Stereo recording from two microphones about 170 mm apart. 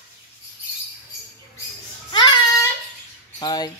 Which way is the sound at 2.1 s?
25° left (ahead or behind).